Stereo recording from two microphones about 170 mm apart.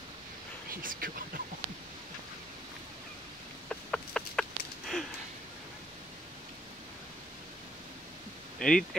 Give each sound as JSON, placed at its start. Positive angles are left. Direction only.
{"t": 0.8, "sound": "speech", "side_deg": -55}
{"t": 3.6, "sound": "chicken", "side_deg": 5}
{"t": 8.5, "sound": "speech", "side_deg": 5}